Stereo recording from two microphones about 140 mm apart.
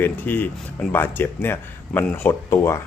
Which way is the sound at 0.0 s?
15° left (ahead or behind).